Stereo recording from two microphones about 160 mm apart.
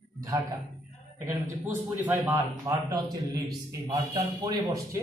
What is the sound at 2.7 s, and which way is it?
A man's voice, 25° right (ahead or behind).